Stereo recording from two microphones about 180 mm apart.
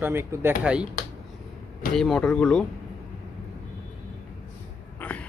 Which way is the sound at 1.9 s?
5° left (ahead or behind).